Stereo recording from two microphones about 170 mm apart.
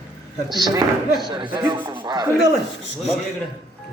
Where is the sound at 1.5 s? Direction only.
25° right (ahead or behind).